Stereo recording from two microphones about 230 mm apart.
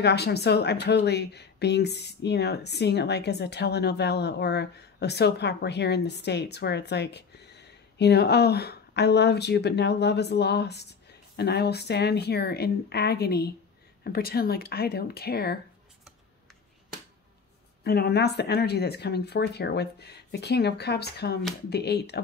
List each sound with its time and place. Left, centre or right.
0.0 s speech: left
17.8 s speech: left